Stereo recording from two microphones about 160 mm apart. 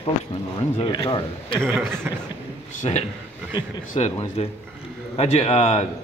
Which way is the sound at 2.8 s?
45° left (ahead or behind).